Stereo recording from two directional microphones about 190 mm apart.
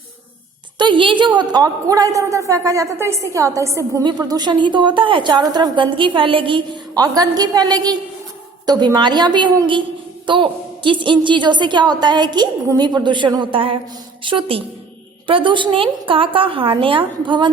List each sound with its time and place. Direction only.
0.8 s a woman's voice: 25° right (ahead or behind)